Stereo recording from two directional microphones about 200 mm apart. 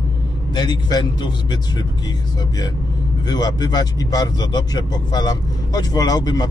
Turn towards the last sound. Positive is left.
turn(degrees=20)  # may be behind; listen again after turning